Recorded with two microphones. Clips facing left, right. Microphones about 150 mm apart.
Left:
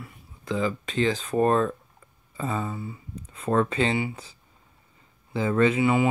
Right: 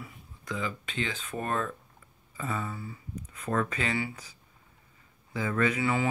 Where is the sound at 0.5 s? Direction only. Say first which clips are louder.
Left 8 dB; 35° left (ahead or behind).